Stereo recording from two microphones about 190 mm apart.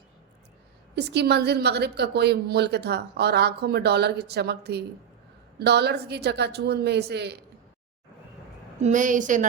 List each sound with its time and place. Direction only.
0.9 s a woman's voice: 60° right (ahead or behind)
8.8 s a woman's voice: 40° right (ahead or behind)